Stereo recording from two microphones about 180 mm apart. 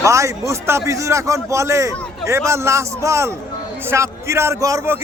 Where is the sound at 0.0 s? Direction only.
15° right (ahead or behind).